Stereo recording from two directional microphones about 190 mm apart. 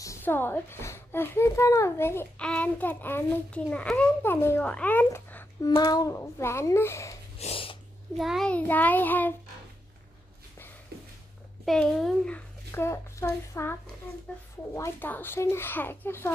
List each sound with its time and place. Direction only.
0.0 s a child's voice: 15° left (ahead or behind)
7.3 s snort: 30° left (ahead or behind)
8.2 s a child's voice: centre (ahead or behind)
11.6 s speech: centre (ahead or behind)
12.7 s a child's voice: 15° left (ahead or behind)